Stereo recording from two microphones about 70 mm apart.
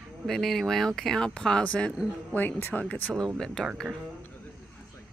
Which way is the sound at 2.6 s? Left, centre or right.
Left.